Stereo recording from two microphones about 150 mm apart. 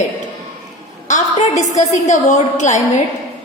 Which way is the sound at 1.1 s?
50° left (ahead or behind).